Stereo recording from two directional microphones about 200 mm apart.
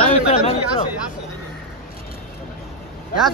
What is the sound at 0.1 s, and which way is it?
Chatter, 30° left (ahead or behind).